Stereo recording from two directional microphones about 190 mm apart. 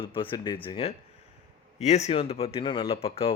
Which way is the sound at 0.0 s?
25° left (ahead or behind).